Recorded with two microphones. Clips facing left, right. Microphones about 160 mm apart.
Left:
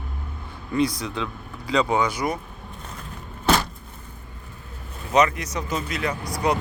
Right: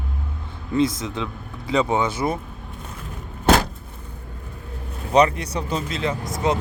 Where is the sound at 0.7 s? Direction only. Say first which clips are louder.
Right 2 dB; 25° right (ahead or behind).